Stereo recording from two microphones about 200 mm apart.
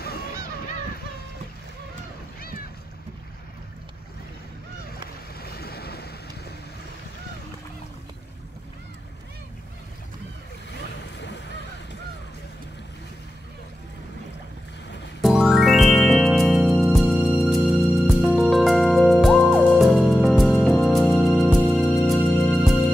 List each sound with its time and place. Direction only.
0.0 s honk: 50° left (ahead or behind)
5.4 s waves: 50° left (ahead or behind)
11.1 s waves: 60° left (ahead or behind)
15.2 s music: centre (ahead or behind)